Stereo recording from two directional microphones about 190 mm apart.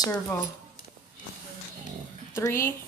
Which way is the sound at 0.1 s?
10° left (ahead or behind).